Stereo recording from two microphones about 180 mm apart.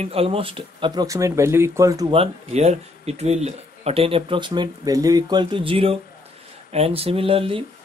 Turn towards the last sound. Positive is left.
turn(degrees=-30)  # may be behind; listen again after turning